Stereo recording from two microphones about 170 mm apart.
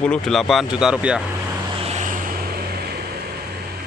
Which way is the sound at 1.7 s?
35° right (ahead or behind).